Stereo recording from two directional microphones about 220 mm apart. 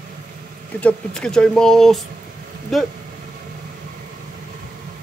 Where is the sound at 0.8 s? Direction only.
5° left (ahead or behind).